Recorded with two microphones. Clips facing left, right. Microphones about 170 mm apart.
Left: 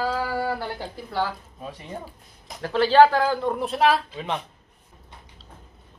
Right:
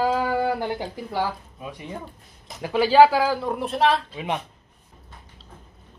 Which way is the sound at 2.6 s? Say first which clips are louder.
Right 1 dB; 10° right (ahead or behind).